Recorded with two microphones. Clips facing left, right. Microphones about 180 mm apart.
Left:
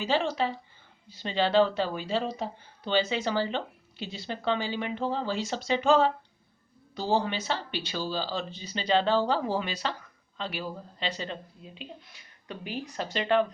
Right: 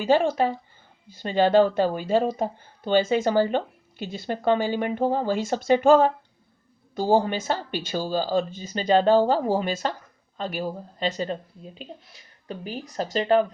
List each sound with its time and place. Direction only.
0.0 s a woman's voice: 50° right (ahead or behind)